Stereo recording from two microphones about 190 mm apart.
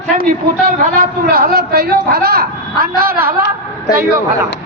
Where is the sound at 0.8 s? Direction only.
50° right (ahead or behind).